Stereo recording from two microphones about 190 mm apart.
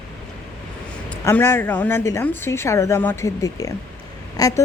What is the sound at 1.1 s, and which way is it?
A woman's voice, 10° left (ahead or behind).